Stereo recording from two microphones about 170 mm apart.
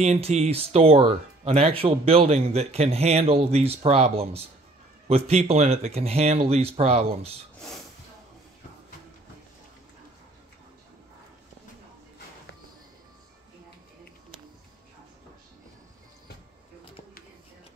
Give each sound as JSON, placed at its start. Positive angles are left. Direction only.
{"t": 0.0, "sound": "speech", "side_deg": -40}